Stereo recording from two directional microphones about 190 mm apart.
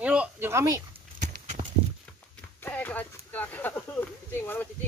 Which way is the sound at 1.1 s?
40° right (ahead or behind).